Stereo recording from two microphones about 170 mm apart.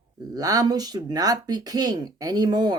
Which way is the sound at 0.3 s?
20° right (ahead or behind).